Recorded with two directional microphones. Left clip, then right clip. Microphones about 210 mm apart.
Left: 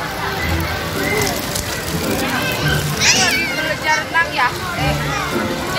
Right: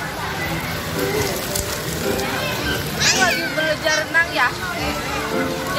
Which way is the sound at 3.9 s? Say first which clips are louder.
Left 3 dB; 55° right (ahead or behind).